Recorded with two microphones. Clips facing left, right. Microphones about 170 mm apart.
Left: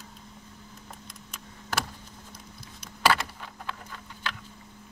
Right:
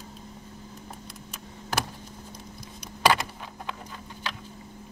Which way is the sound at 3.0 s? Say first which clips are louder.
Right 2 dB; 15° right (ahead or behind).